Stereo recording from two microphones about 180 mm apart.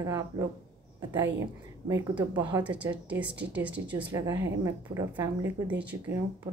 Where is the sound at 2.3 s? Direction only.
25° right (ahead or behind).